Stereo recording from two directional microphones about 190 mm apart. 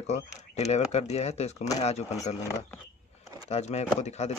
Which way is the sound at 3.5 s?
35° left (ahead or behind).